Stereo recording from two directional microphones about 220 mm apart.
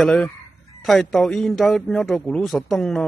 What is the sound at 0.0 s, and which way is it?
A man's voice, 5° left (ahead or behind).